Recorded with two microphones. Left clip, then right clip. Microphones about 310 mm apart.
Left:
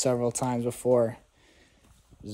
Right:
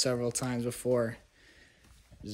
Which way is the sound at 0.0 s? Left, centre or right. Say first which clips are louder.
Left 5 dB; centre.